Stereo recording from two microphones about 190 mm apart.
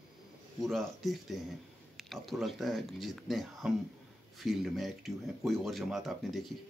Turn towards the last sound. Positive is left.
turn(degrees=0)  # may be behind; listen again after turning